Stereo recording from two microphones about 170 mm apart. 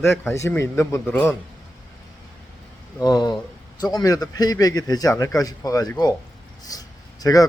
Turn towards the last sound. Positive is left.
turn(degrees=20)  # may be behind; listen again after turning